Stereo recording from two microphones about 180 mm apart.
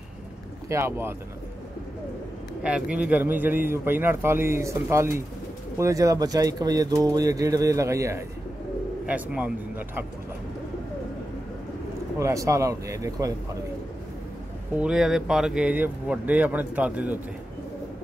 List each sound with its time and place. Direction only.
0.7 s a man's voice: 15° right (ahead or behind)
2.6 s a man's voice: 5° right (ahead or behind)
12.2 s a man's voice: 15° right (ahead or behind)
14.8 s a man's voice: 5° right (ahead or behind)